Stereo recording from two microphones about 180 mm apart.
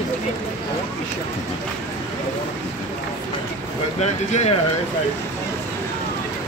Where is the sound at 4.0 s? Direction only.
35° left (ahead or behind).